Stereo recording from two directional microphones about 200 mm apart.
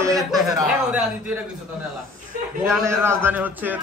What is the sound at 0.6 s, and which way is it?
Speech, 5° right (ahead or behind).